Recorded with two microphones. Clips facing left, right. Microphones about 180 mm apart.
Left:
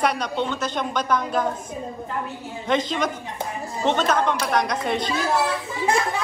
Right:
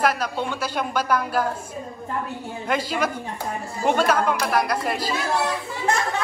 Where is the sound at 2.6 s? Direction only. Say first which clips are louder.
Left 2 dB; 5° right (ahead or behind).